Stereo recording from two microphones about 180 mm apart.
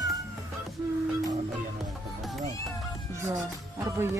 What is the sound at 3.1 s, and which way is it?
Speech, 15° right (ahead or behind).